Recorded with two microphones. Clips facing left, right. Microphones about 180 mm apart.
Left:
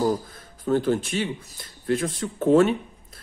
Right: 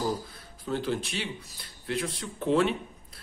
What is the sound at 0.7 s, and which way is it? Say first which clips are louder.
Speech: left 8 dB; 50° left (ahead or behind).